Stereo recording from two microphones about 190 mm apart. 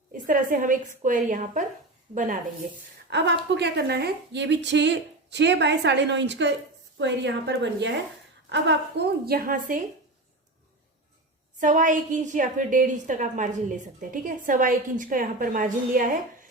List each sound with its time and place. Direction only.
0.3 s a woman's voice: 45° right (ahead or behind)
3.1 s a woman's voice: 65° right (ahead or behind); by 9.8 s 45° right (ahead or behind)
11.6 s a woman's voice: 40° right (ahead or behind)